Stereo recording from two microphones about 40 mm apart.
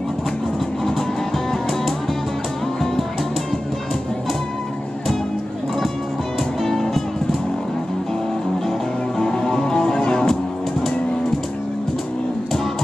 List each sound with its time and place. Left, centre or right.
1.5 s music: centre
6.6 s music: centre
9.3 s music: centre